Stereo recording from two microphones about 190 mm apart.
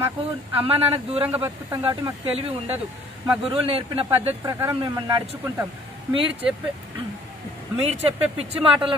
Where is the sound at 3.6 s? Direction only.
30° right (ahead or behind).